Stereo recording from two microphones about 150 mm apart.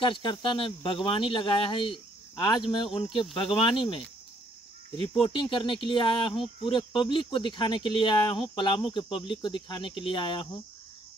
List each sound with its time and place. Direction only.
0.0 s speech: 35° left (ahead or behind)
5.2 s speech: 35° left (ahead or behind)